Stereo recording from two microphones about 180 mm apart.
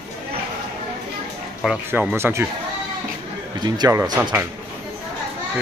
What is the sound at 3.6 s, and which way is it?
Speech, 20° right (ahead or behind).